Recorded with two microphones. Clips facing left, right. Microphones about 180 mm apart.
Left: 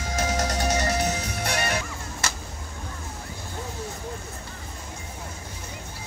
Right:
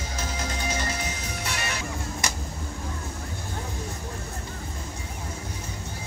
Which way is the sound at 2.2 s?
15° right (ahead or behind).